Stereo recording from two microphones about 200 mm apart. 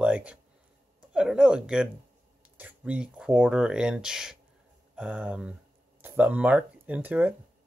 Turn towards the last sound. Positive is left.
turn(degrees=-10)  # may be behind; listen again after turning